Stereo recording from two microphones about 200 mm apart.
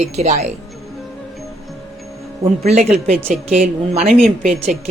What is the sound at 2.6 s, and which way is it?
A woman's voice, 30° right (ahead or behind).